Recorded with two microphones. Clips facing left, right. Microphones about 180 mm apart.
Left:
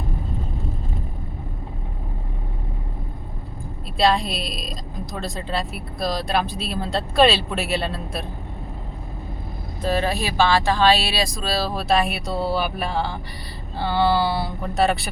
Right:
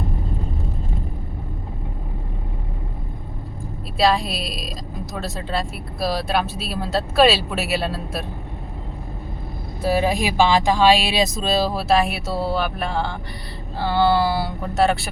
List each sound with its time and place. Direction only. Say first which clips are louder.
3.9 s speech: right 1 dB; centre (ahead or behind)
9.8 s speech: right 3 dB; 10° right (ahead or behind)
11.7 s speech: right 2 dB; 5° right (ahead or behind)